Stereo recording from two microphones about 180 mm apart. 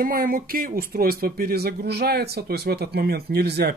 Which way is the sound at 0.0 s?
55° right (ahead or behind).